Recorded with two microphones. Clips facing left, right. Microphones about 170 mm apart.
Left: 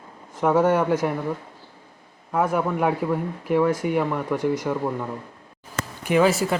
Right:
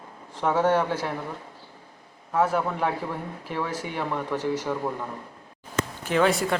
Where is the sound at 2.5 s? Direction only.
10° left (ahead or behind).